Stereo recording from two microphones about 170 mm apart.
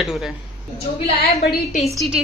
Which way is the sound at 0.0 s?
Centre (ahead or behind).